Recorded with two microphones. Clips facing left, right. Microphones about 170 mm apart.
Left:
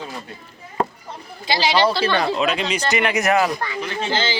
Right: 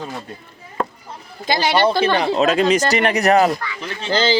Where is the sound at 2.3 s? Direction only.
45° right (ahead or behind).